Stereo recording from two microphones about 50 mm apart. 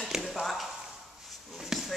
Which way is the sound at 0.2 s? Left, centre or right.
Centre.